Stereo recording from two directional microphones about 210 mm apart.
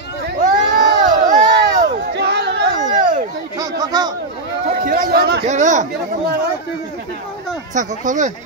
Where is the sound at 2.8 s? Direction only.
35° right (ahead or behind).